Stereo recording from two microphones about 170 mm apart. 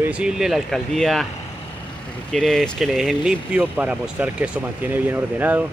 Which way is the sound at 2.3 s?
5° left (ahead or behind).